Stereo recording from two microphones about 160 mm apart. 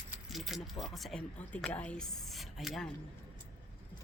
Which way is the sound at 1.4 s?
10° left (ahead or behind).